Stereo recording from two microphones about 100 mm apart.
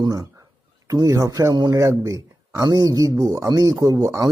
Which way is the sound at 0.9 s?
35° right (ahead or behind).